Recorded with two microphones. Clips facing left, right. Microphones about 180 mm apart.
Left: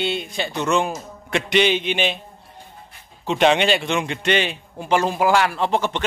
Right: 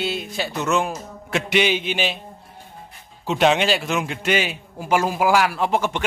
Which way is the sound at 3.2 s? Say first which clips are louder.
Left 1 dB; 5° right (ahead or behind).